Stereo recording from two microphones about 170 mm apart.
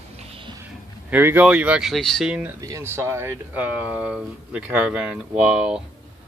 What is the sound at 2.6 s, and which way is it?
Speech, 20° right (ahead or behind).